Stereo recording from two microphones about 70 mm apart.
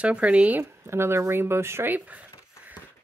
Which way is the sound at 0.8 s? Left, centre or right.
Right.